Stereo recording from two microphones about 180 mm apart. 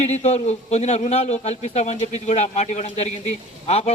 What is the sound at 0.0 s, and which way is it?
A man's voice, 40° left (ahead or behind).